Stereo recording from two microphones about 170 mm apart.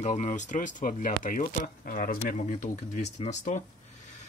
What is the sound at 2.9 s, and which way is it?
Speech, 40° left (ahead or behind).